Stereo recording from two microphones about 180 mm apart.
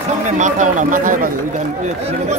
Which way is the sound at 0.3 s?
40° right (ahead or behind).